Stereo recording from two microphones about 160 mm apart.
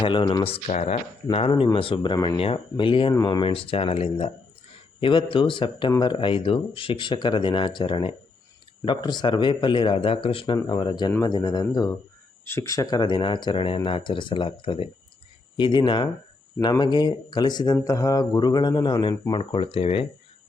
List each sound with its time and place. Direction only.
0.0 s speech: 30° left (ahead or behind)
2.1 s mantra: 20° left (ahead or behind)
2.4 s speech: 35° left (ahead or behind)
10.2 s mantra: 30° left (ahead or behind)
12.5 s speech: 20° left (ahead or behind); by 14.8 s 35° left (ahead or behind)
15.5 s mantra: 30° left (ahead or behind)
19.3 s speech: 30° left (ahead or behind)